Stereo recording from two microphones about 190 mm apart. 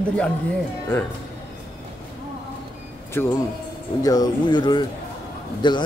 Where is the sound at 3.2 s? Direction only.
10° left (ahead or behind).